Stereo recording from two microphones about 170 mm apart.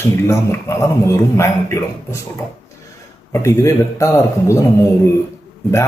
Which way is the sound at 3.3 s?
15° left (ahead or behind).